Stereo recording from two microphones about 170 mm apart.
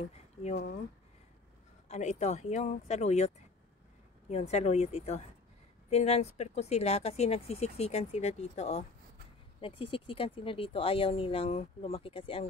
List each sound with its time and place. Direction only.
0.0 s speech: 40° left (ahead or behind)
1.9 s speech: 40° left (ahead or behind)